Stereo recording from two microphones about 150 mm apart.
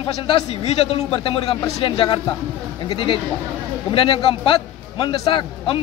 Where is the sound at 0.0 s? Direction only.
40° left (ahead or behind).